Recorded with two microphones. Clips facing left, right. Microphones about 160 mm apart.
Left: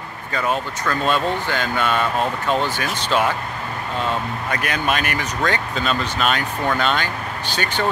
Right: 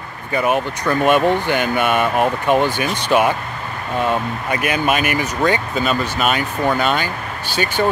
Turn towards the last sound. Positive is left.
turn(degrees=-10)  # may be behind; listen again after turning